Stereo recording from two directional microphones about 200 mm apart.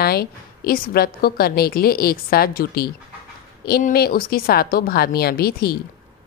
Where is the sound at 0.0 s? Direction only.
50° left (ahead or behind).